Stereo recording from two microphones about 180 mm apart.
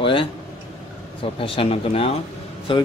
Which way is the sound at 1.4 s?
30° left (ahead or behind).